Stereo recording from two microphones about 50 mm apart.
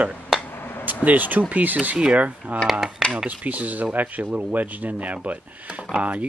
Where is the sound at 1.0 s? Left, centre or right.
Right.